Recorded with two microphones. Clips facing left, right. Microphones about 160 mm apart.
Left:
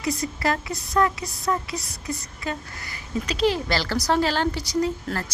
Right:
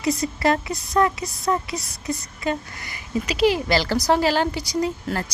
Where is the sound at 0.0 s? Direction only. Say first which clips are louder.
Right 4 dB; 25° right (ahead or behind).